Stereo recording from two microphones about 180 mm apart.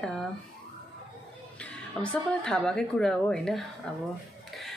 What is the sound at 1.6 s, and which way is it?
Speech, 5° left (ahead or behind).